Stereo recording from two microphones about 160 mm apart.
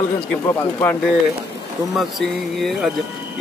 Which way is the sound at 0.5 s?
15° left (ahead or behind).